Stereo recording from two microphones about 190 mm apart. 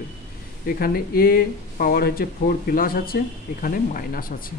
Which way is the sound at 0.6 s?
50° left (ahead or behind).